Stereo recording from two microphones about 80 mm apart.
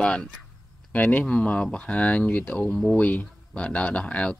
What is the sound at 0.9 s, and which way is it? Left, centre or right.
Speech, left.